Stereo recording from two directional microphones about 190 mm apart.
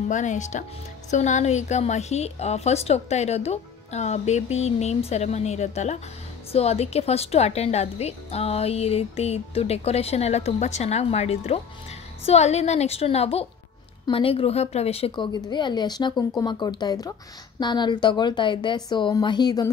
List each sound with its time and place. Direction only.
0.1 s a woman's voice: 40° left (ahead or behind); by 19.7 s 20° left (ahead or behind)